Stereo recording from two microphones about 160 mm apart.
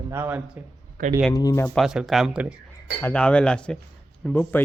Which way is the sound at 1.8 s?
Centre (ahead or behind).